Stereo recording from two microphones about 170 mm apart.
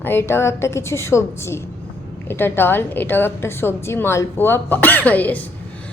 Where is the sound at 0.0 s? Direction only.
15° left (ahead or behind).